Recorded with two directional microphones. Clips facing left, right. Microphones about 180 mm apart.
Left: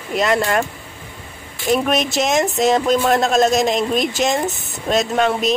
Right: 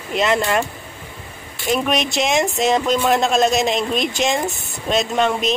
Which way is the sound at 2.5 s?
Centre (ahead or behind).